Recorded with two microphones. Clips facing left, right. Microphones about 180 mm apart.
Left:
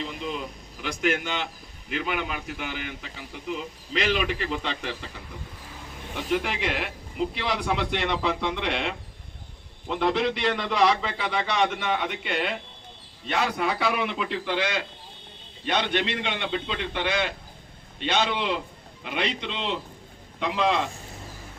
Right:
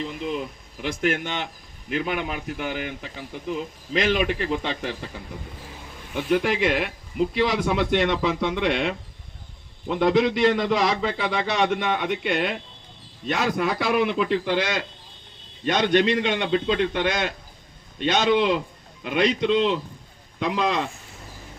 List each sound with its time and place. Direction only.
0.0 s a man's voice: 50° right (ahead or behind)
6.2 s a man's voice: 45° right (ahead or behind)
10.2 s a man's voice: 40° right (ahead or behind)